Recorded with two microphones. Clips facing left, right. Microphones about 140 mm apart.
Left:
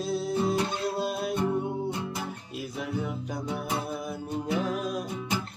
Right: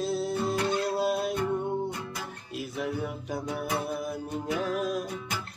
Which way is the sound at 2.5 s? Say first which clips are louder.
Right 2 dB; centre (ahead or behind).